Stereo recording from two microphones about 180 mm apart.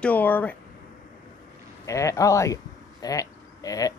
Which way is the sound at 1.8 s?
15° left (ahead or behind).